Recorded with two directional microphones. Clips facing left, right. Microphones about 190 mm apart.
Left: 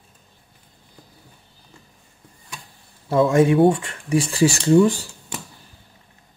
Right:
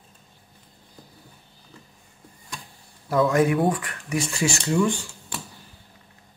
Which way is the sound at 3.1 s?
25° left (ahead or behind).